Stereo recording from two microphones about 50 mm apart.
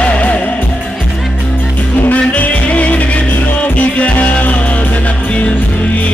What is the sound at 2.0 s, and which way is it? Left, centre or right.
Music, left.